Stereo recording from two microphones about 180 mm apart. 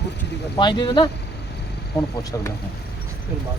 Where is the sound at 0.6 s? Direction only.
25° left (ahead or behind).